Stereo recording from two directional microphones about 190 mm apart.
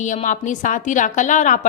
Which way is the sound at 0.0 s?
40° left (ahead or behind).